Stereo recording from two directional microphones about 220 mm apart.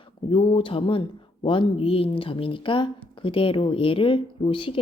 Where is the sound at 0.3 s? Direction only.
25° left (ahead or behind).